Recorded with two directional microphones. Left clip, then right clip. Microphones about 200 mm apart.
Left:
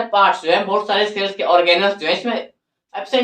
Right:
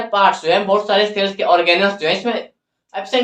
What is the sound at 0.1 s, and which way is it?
Speech, 20° right (ahead or behind).